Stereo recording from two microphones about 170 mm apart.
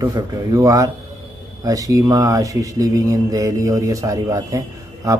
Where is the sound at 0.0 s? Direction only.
20° right (ahead or behind).